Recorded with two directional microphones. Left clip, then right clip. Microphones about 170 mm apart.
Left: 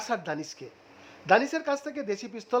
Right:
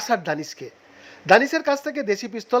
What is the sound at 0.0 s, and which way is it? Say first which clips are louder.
Speech: right 8 dB; 15° right (ahead or behind).